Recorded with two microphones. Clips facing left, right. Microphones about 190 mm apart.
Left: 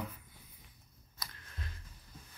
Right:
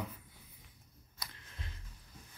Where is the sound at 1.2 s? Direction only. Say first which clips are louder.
Left 2 dB; 25° right (ahead or behind).